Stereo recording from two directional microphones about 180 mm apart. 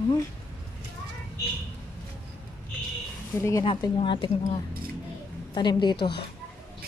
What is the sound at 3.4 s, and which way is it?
Speech, 15° left (ahead or behind).